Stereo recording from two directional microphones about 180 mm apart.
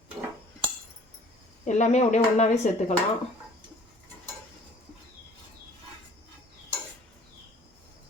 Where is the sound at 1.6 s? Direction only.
40° left (ahead or behind).